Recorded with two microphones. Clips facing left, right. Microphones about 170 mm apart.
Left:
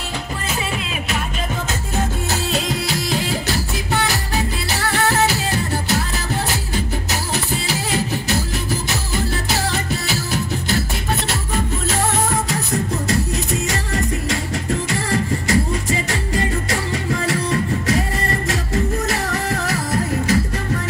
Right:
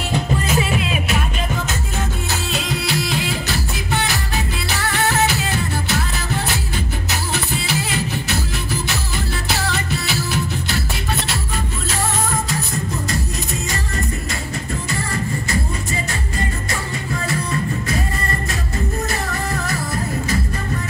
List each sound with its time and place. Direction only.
2.5 s music: 40° left (ahead or behind)
4.6 s music: 35° left (ahead or behind)
7.6 s music: 40° left (ahead or behind)
9.7 s music: 45° left (ahead or behind)
13.7 s music: 85° left